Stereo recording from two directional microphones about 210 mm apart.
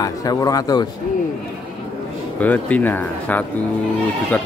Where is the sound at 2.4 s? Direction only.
5° left (ahead or behind).